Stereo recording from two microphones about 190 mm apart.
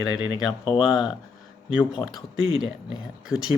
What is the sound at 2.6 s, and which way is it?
Speech, 5° right (ahead or behind).